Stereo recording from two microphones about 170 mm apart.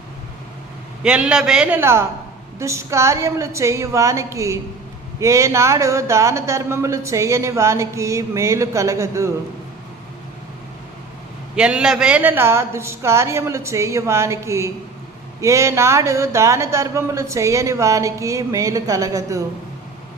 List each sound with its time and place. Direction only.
1.0 s speech: 5° right (ahead or behind)
11.5 s speech: 5° right (ahead or behind)